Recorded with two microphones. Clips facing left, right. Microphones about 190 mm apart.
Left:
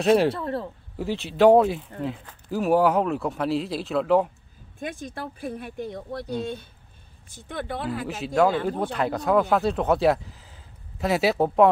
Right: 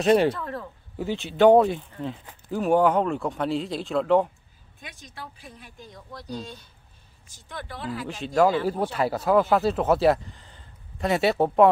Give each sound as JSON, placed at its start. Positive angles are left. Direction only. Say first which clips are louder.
{"t": 0.0, "sound": "speech", "louder": "even", "side_deg": 0}
{"t": 0.4, "sound": "speech", "louder": "left 5 dB", "side_deg": 30}
{"t": 0.9, "sound": "speech", "louder": "even", "side_deg": 0}
{"t": 4.7, "sound": "speech", "louder": "left 10 dB", "side_deg": 50}
{"t": 8.1, "sound": "speech", "louder": "right 1 dB", "side_deg": 0}